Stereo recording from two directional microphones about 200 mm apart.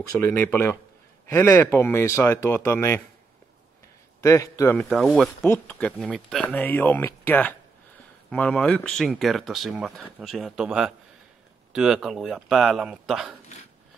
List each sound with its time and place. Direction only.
0.2 s speech: 10° left (ahead or behind)
4.2 s speech: 15° left (ahead or behind)
4.7 s speech: centre (ahead or behind)